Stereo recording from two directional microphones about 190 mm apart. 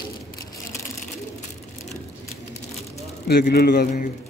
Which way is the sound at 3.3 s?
55° left (ahead or behind).